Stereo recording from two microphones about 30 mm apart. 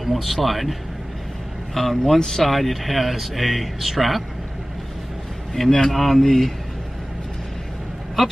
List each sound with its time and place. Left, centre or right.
0.0 s speech: centre
2.4 s speech: centre
5.7 s speech: centre
5.9 s speech: centre
8.2 s speech: centre